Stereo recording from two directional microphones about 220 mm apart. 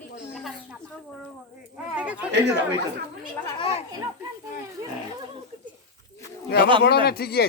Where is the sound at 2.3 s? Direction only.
50° right (ahead or behind).